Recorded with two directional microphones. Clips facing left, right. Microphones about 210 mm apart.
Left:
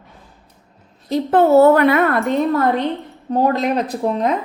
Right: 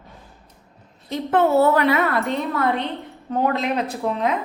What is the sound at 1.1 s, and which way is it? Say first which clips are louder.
A woman's voice: left 5 dB; 35° left (ahead or behind).